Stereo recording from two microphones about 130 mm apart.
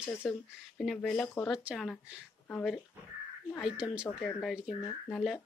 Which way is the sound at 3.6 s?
5° right (ahead or behind).